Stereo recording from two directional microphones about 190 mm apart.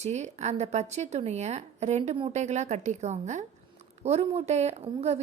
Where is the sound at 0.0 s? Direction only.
35° right (ahead or behind).